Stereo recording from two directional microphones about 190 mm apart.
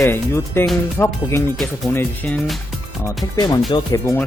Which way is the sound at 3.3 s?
20° left (ahead or behind).